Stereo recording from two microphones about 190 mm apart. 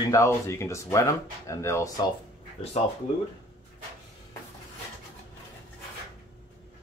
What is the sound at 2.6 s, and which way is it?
Speech, 35° left (ahead or behind).